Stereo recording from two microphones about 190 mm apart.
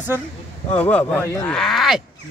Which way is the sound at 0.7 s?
10° left (ahead or behind).